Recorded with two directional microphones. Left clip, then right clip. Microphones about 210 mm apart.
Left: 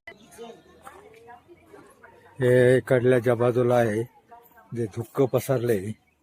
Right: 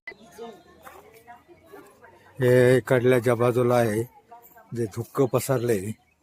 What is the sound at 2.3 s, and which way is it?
Speech, 5° right (ahead or behind).